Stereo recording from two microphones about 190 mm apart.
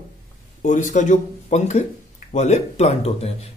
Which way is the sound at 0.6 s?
40° left (ahead or behind).